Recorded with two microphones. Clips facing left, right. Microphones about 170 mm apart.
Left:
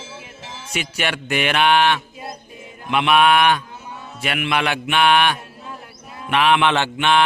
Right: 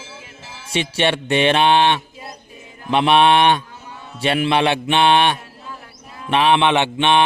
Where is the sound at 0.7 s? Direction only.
30° right (ahead or behind).